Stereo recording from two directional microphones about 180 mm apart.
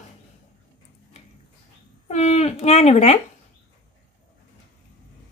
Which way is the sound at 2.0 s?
35° left (ahead or behind).